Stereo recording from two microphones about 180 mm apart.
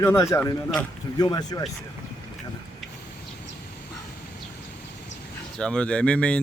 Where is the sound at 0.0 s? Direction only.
15° left (ahead or behind).